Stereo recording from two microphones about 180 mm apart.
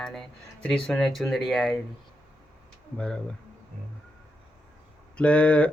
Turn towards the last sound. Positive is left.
turn(degrees=5)  # may be behind; listen again after turning